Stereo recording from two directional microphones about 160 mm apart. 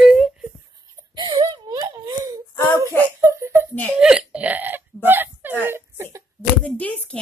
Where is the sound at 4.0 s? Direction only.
5° right (ahead or behind).